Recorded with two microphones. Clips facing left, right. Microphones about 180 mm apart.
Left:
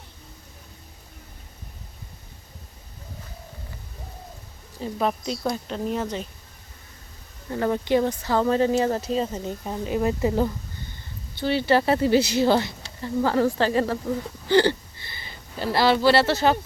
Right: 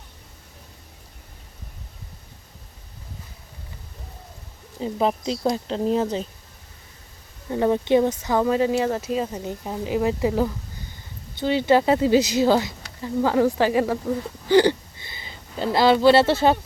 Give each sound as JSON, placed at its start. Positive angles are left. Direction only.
{"t": 4.8, "sound": "speech", "side_deg": -20}
{"t": 7.5, "sound": "speech", "side_deg": -20}
{"t": 14.4, "sound": "a sound", "side_deg": -15}
{"t": 15.7, "sound": "speech", "side_deg": -20}